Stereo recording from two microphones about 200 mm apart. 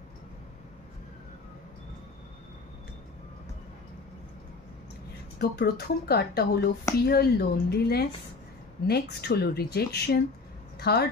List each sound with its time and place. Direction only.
5.4 s speech: 55° left (ahead or behind)